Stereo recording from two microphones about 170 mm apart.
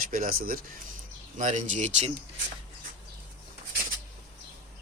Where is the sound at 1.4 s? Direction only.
45° right (ahead or behind).